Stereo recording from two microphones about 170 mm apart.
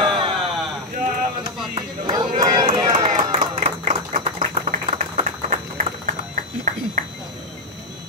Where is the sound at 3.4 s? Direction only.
45° right (ahead or behind).